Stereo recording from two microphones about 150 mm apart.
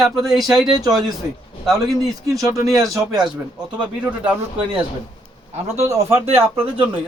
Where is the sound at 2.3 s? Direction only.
20° right (ahead or behind).